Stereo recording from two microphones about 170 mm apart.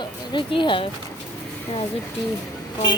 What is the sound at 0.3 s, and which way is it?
Speech, 30° left (ahead or behind).